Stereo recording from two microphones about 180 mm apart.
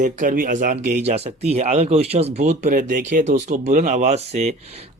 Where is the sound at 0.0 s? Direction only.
45° right (ahead or behind).